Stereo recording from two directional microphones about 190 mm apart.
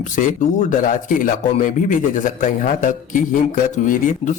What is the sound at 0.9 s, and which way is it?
Speech, 45° left (ahead or behind).